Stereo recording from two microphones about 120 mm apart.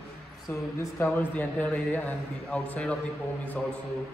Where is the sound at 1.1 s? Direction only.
15° left (ahead or behind).